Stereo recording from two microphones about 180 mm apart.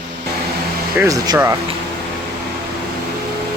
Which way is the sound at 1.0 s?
15° right (ahead or behind).